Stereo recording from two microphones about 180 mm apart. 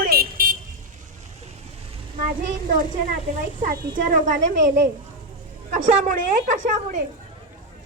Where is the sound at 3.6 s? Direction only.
50° right (ahead or behind).